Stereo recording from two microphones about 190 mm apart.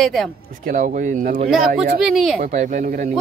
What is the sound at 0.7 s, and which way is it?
Speech, 45° right (ahead or behind).